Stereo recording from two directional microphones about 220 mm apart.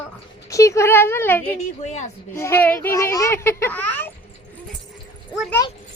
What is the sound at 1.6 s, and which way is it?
Speech, 30° left (ahead or behind).